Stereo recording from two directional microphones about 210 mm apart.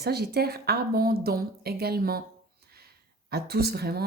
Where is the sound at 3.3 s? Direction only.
50° right (ahead or behind).